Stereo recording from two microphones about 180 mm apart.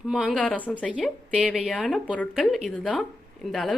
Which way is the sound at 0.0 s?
Centre (ahead or behind).